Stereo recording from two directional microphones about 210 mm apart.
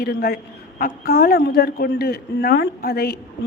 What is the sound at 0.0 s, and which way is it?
Speech, 50° left (ahead or behind).